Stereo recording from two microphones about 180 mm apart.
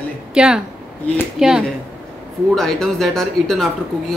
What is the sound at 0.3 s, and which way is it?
A woman's voice, 5° right (ahead or behind).